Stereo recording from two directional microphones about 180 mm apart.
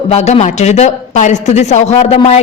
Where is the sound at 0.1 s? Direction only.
35° left (ahead or behind).